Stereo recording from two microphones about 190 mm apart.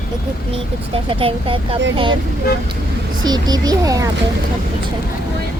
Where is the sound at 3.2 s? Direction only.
20° right (ahead or behind).